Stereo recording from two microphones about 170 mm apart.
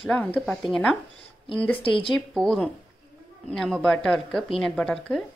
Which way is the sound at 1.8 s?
30° left (ahead or behind).